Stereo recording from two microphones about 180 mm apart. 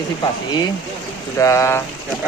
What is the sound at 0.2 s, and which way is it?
Speech, 20° left (ahead or behind).